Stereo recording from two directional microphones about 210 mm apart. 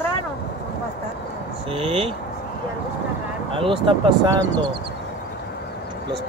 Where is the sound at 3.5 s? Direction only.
25° right (ahead or behind).